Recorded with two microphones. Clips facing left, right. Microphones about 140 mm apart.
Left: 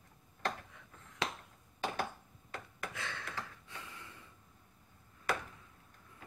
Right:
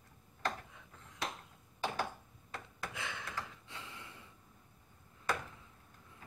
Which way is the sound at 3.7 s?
20° right (ahead or behind).